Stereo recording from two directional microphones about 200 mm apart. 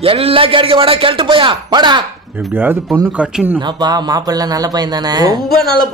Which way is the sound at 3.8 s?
20° right (ahead or behind).